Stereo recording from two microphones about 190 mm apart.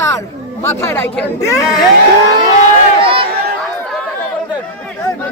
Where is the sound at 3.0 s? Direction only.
30° right (ahead or behind).